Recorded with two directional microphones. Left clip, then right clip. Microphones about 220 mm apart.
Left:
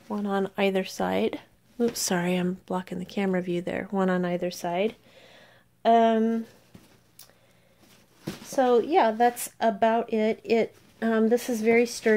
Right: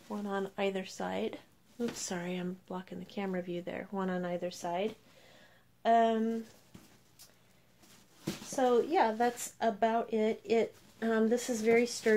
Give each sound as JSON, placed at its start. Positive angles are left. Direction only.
{"t": 0.1, "sound": "speech", "side_deg": 45}
{"t": 8.5, "sound": "speech", "side_deg": 45}